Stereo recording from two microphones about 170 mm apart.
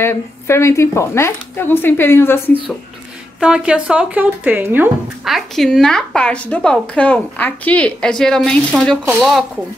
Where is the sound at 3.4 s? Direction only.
5° right (ahead or behind).